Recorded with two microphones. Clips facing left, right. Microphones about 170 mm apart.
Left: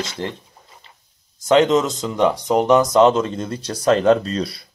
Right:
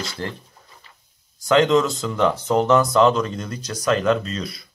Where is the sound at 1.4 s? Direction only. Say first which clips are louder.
Left 2 dB; 20° left (ahead or behind).